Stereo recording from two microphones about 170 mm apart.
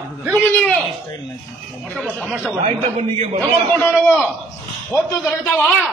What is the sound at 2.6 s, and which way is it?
Speech, 40° right (ahead or behind).